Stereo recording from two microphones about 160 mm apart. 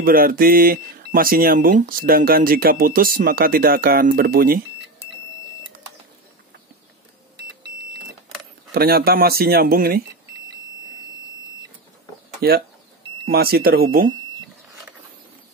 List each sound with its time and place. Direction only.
0.0 s speech: 65° right (ahead or behind)
8.7 s speech: 75° right (ahead or behind)
12.4 s speech: 70° right (ahead or behind)